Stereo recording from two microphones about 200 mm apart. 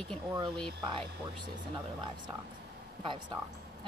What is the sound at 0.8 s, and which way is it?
Speech, 25° right (ahead or behind).